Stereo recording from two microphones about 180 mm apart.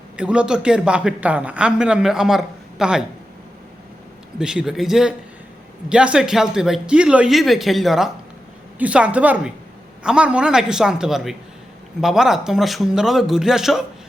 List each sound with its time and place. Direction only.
0.2 s a man's voice: 5° right (ahead or behind)
4.4 s a man's voice: 5° right (ahead or behind)